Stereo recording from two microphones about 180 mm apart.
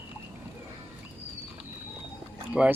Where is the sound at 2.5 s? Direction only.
5° right (ahead or behind).